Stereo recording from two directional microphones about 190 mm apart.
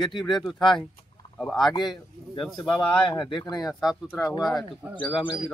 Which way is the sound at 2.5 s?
5° left (ahead or behind).